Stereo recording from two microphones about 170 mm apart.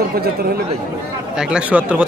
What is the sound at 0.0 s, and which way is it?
Speech, 65° right (ahead or behind).